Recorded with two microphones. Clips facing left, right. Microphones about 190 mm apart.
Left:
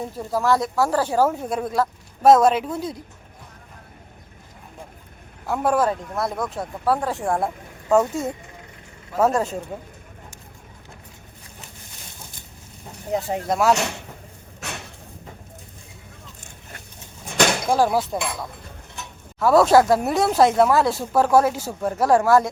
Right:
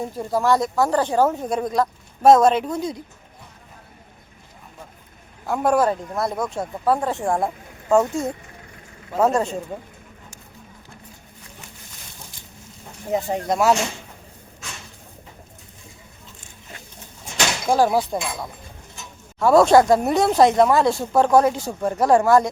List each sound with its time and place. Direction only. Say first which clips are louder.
0.1 s speech: right 1 dB; centre (ahead or behind)
5.5 s speech: right 2 dB; centre (ahead or behind)
13.1 s speech: right 1 dB; centre (ahead or behind)
14.6 s a sound: left 6 dB; 65° left (ahead or behind)
17.3 s a sound: left 5 dB; 55° left (ahead or behind)
17.7 s speech: right 1 dB; centre (ahead or behind)
19.4 s speech: right 1 dB; centre (ahead or behind)